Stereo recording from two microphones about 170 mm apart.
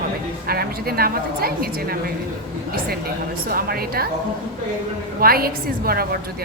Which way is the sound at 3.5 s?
60° right (ahead or behind).